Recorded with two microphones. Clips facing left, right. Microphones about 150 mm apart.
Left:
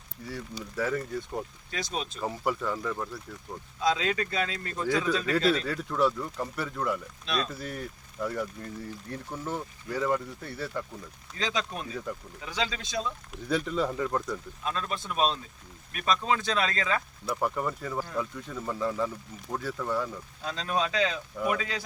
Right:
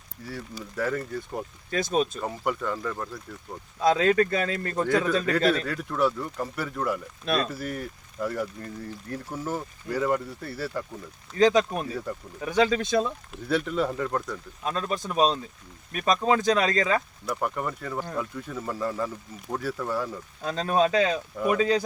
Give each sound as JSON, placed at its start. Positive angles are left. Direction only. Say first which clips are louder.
{"t": 0.8, "sound": "speech", "louder": "right 1 dB", "side_deg": 0}
{"t": 1.7, "sound": "speech", "louder": "right 9 dB", "side_deg": -50}
{"t": 2.2, "sound": "speech", "louder": "right 1 dB", "side_deg": 5}
{"t": 3.8, "sound": "speech", "louder": "right 7 dB", "side_deg": -50}
{"t": 5.6, "sound": "speech", "louder": "right 1 dB", "side_deg": 0}
{"t": 11.3, "sound": "speech", "louder": "right 11 dB", "side_deg": -45}
{"t": 13.5, "sound": "speech", "louder": "right 2 dB", "side_deg": 0}
{"t": 14.6, "sound": "speech", "louder": "right 7 dB", "side_deg": -35}
{"t": 17.2, "sound": "speech", "louder": "even", "side_deg": 0}
{"t": 20.4, "sound": "speech", "louder": "right 7 dB", "side_deg": -45}